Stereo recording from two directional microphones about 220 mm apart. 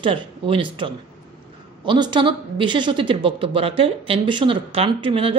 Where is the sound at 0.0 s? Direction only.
25° right (ahead or behind).